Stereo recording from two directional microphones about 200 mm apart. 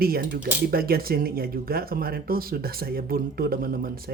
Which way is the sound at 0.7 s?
50° right (ahead or behind).